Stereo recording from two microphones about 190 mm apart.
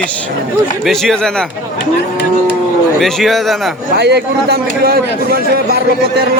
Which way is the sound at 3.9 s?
60° right (ahead or behind).